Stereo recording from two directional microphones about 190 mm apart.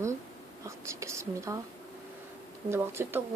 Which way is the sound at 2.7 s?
15° right (ahead or behind).